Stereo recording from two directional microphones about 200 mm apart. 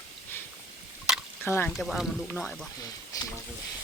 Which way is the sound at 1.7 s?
Centre (ahead or behind).